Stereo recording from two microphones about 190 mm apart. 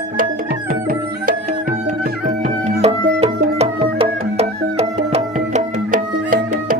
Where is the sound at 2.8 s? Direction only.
35° right (ahead or behind).